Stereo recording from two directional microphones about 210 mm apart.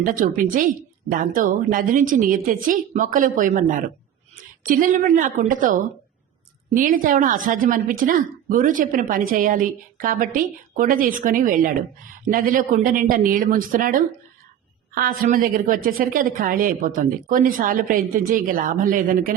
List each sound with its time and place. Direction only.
0.0 s a woman's voice: 40° right (ahead or behind)